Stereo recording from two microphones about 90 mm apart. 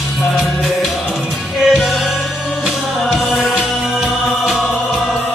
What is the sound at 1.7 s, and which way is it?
Music, centre (ahead or behind).